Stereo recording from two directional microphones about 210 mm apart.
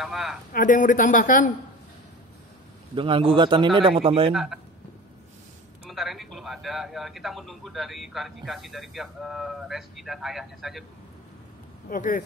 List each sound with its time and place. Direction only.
0.0 s a man's voice: centre (ahead or behind)
0.5 s a man's voice: 40° left (ahead or behind)
2.9 s a man's voice: 25° right (ahead or behind)
4.3 s a man's voice: centre (ahead or behind)
5.9 s a man's voice: centre (ahead or behind)
11.9 s a man's voice: 40° left (ahead or behind)